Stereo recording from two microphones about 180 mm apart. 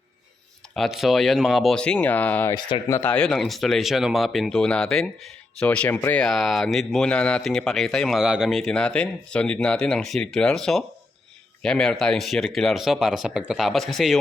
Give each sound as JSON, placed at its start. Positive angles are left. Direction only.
{"t": 0.7, "sound": "speech", "side_deg": 0}
{"t": 2.6, "sound": "speech", "side_deg": 25}
{"t": 2.9, "sound": "speech", "side_deg": 10}